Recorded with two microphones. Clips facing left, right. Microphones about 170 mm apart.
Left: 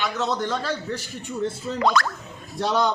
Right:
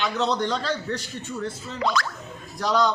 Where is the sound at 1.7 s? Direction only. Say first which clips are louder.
Left 4 dB; 50° left (ahead or behind).